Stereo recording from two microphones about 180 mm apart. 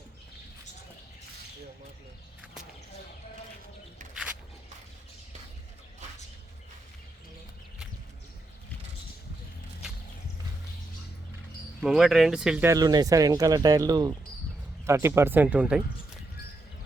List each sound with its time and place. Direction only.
11.8 s speech: centre (ahead or behind)
12.7 s speech: 20° right (ahead or behind)